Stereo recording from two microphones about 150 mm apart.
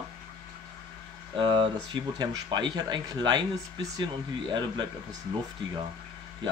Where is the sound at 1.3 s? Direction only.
35° right (ahead or behind).